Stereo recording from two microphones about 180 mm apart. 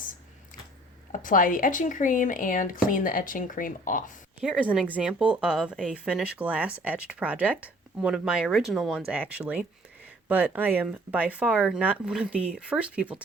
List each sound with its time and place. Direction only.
1.1 s speech: 50° left (ahead or behind)
4.4 s speech: 5° right (ahead or behind)